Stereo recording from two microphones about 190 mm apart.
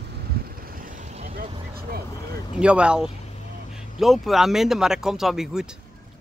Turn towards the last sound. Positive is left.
turn(degrees=-5)  # may be behind; listen again after turning